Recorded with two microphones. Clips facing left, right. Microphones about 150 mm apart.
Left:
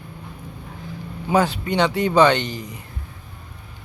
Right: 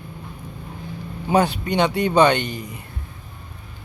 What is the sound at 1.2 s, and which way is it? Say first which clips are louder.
A man's voice: right 1 dB; 20° right (ahead or behind).